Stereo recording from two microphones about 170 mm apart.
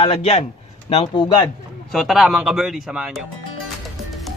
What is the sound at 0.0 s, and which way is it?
A man's voice, 35° left (ahead or behind).